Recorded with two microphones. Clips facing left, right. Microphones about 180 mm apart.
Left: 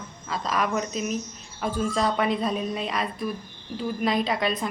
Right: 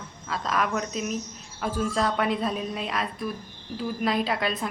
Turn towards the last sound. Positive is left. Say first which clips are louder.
# left 2 dB
turn(degrees=0)  # may be behind; listen again after turning